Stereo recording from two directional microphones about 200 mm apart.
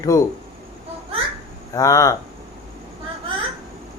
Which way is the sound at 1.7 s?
15° left (ahead or behind).